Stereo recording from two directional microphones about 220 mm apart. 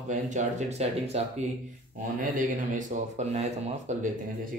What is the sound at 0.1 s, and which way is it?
Speech, 35° right (ahead or behind).